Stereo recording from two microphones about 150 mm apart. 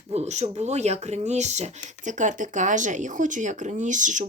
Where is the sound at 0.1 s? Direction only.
45° right (ahead or behind).